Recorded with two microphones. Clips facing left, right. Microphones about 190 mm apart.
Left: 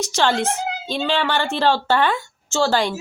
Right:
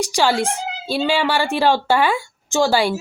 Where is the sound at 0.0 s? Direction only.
10° right (ahead or behind).